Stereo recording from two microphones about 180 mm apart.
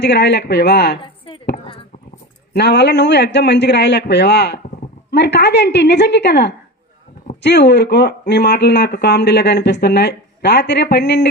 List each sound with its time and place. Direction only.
0.0 s speech: 70° left (ahead or behind)
2.5 s speech: 70° left (ahead or behind)